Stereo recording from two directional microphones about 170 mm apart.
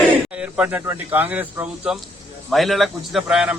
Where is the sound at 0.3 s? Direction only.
10° right (ahead or behind).